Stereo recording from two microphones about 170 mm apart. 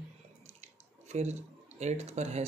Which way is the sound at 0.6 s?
40° right (ahead or behind).